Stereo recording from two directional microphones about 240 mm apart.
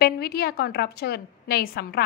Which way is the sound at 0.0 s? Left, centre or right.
Left.